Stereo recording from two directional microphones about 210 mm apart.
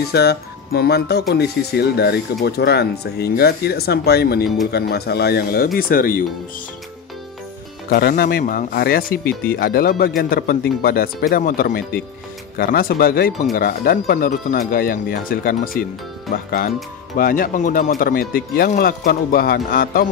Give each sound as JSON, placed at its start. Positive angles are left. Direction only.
{"t": 0.1, "sound": "speech", "side_deg": 50}
{"t": 7.9, "sound": "speech", "side_deg": 45}
{"t": 17.2, "sound": "speech", "side_deg": 40}